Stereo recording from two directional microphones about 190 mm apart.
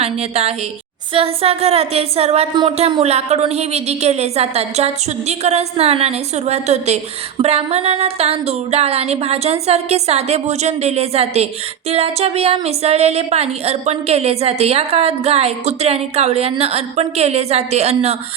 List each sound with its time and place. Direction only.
0.0 s speech: 35° right (ahead or behind)